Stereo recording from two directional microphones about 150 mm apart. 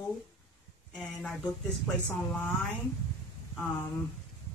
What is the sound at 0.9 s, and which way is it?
Speech, 5° left (ahead or behind).